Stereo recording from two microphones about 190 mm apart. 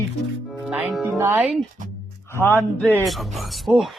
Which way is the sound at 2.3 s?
10° left (ahead or behind).